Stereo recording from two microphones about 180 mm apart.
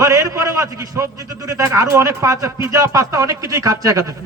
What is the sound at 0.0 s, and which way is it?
A man's voice, 20° right (ahead or behind).